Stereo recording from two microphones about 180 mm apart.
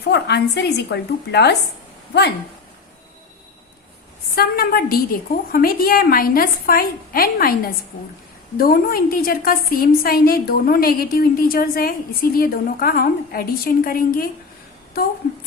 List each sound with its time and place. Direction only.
0.1 s a woman's voice: 70° left (ahead or behind)
4.4 s a woman's voice: 60° left (ahead or behind)